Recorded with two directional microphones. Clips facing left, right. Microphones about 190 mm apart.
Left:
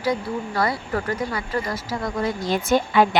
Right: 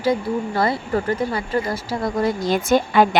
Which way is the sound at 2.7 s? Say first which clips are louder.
Right 2 dB; 45° right (ahead or behind).